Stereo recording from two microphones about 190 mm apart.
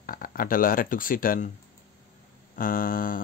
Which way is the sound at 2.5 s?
45° left (ahead or behind).